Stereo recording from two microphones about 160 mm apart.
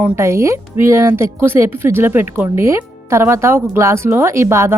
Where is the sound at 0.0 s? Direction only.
15° right (ahead or behind).